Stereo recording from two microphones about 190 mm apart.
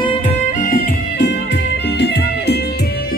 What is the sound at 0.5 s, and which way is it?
Music, 45° left (ahead or behind).